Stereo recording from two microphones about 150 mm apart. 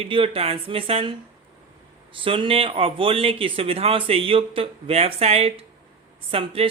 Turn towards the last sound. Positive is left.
turn(degrees=-40)  # may be behind; listen again after turning